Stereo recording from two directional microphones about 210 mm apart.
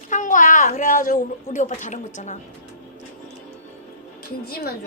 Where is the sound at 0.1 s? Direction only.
40° left (ahead or behind).